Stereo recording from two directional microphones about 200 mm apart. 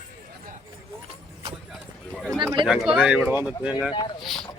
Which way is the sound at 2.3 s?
15° right (ahead or behind).